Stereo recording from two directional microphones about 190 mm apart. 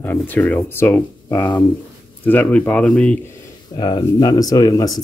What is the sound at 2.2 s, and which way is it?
Speech, 10° left (ahead or behind).